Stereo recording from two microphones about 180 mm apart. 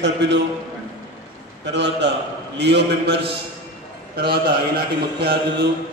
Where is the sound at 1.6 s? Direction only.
75° right (ahead or behind).